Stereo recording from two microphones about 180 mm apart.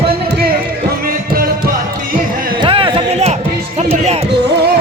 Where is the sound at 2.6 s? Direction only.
30° right (ahead or behind).